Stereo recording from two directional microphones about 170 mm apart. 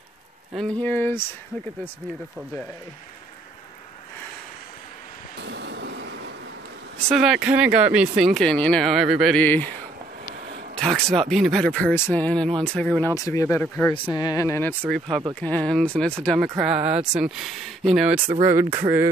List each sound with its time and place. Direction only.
0.6 s speech: 10° left (ahead or behind)
5.4 s vehicle: 90° right
7.0 s speech: centre (ahead or behind)
9.4 s speech: 10° left (ahead or behind)
10.8 s speech: 5° left (ahead or behind)
13.1 s speech: 20° left (ahead or behind)
13.9 s speech: 25° left (ahead or behind); by 16.3 s 5° left (ahead or behind)
16.5 s speech: 5° right (ahead or behind)
18.4 s a sound: 15° right (ahead or behind)